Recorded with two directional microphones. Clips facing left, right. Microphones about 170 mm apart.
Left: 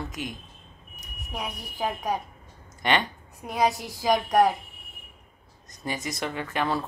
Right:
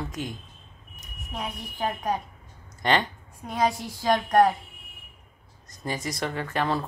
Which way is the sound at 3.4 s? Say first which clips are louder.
Left 1 dB; 5° left (ahead or behind).